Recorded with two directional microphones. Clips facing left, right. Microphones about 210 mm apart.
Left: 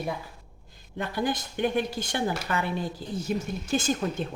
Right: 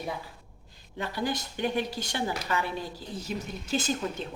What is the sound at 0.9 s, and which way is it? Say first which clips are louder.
A woman's voice: left 3 dB; 50° left (ahead or behind).